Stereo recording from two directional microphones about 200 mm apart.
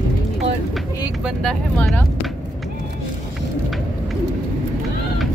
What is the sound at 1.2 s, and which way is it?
Speech, 5° left (ahead or behind).